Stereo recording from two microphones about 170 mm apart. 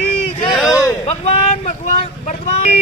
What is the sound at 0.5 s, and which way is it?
Speech, 5° right (ahead or behind).